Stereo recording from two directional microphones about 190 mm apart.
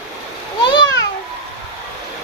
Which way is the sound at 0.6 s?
25° left (ahead or behind).